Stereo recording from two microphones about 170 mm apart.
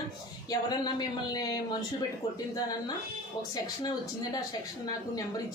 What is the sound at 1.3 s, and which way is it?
Speech, 25° left (ahead or behind).